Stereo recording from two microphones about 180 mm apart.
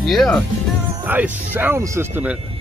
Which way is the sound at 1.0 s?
10° right (ahead or behind).